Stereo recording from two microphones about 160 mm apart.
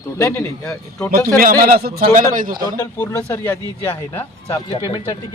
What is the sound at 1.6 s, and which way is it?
Speech, 70° right (ahead or behind).